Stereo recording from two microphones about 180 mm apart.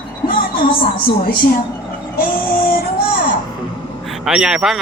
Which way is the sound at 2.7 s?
50° left (ahead or behind).